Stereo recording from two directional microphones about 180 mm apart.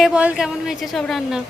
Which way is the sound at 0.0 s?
5° right (ahead or behind).